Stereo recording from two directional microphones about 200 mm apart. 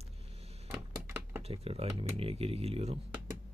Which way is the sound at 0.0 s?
30° right (ahead or behind).